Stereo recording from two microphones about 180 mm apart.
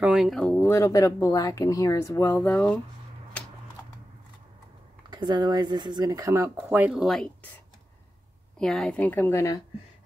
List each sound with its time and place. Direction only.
0.0 s speech: 5° right (ahead or behind)
5.1 s speech: 25° right (ahead or behind); by 7.2 s centre (ahead or behind)
8.5 s speech: 5° left (ahead or behind)